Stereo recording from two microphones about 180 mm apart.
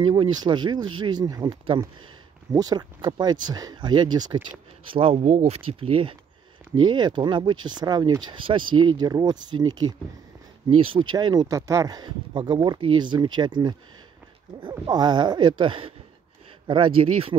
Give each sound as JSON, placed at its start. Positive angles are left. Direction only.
{"t": 0.0, "sound": "speech", "side_deg": -25}